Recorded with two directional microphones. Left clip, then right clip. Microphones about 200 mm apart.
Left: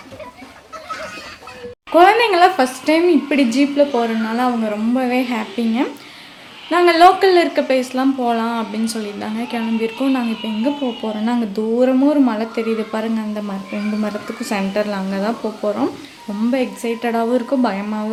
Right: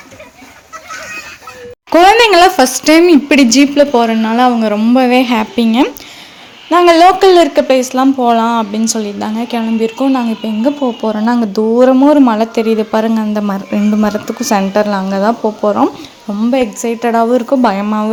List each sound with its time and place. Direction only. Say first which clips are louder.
1.9 s speech: right 6 dB; 50° right (ahead or behind); by 18.1 s 35° right (ahead or behind)